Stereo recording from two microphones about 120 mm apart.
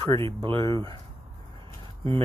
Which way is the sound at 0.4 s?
45° right (ahead or behind).